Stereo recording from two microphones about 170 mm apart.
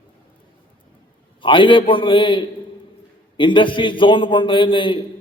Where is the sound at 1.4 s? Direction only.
30° left (ahead or behind).